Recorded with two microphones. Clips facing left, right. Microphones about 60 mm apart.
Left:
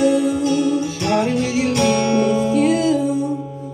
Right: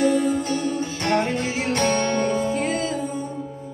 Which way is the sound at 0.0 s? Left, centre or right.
Right.